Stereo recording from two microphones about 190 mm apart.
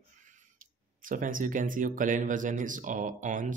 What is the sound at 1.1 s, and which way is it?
Speech, 45° right (ahead or behind).